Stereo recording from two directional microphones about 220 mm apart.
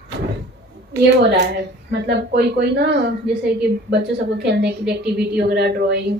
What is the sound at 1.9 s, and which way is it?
A woman's voice, 50° right (ahead or behind).